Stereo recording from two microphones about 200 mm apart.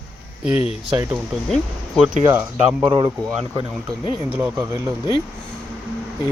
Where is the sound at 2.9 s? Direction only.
20° right (ahead or behind).